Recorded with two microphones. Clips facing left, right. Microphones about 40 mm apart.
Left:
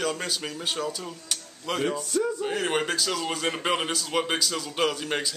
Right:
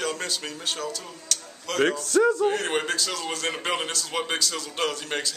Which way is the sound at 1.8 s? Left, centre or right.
Right.